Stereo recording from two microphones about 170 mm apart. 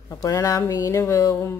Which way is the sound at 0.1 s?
20° left (ahead or behind).